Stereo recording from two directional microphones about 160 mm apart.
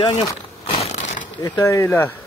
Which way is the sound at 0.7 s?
40° left (ahead or behind).